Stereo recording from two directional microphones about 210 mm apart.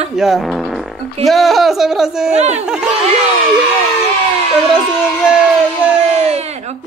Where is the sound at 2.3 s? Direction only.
30° right (ahead or behind).